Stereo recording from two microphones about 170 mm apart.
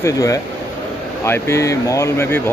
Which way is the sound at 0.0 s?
20° left (ahead or behind).